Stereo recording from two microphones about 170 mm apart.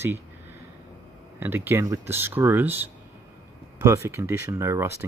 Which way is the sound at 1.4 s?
10° right (ahead or behind).